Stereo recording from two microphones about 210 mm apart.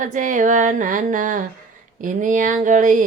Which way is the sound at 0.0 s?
35° right (ahead or behind).